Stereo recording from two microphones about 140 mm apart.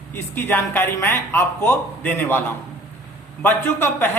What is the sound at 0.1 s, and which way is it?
A man's voice, 15° left (ahead or behind).